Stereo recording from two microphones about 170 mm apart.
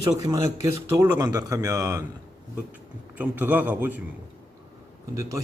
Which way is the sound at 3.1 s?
10° right (ahead or behind).